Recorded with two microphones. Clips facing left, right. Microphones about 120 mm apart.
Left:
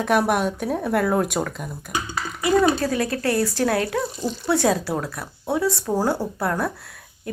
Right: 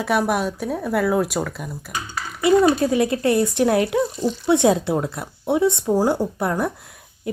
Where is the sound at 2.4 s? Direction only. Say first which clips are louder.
Right 3 dB; 25° right (ahead or behind).